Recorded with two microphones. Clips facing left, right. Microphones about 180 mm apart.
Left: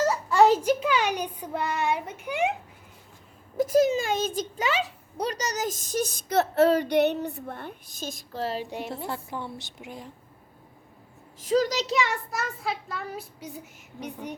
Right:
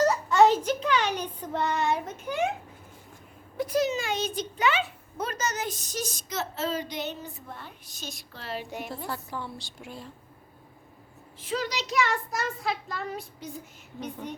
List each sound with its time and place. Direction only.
0.0 s a sound: 5° left (ahead or behind)
0.6 s a child's voice: 10° left (ahead or behind)
3.6 s a woman's voice: 45° left (ahead or behind); by 10.1 s 15° left (ahead or behind)
11.3 s a child's voice: 40° left (ahead or behind)
12.3 s a child's voice: centre (ahead or behind)